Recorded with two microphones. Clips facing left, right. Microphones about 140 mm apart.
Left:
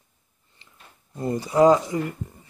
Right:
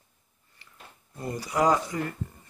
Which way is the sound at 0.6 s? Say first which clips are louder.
Left 1 dB; 20° left (ahead or behind).